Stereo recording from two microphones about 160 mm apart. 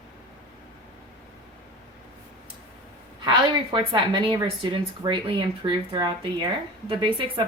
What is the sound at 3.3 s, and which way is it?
A woman's voice, 30° right (ahead or behind).